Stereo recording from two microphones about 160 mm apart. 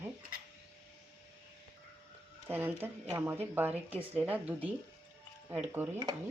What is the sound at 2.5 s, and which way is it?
Speech, 15° right (ahead or behind).